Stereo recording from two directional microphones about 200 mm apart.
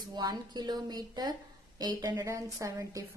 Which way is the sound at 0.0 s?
20° right (ahead or behind).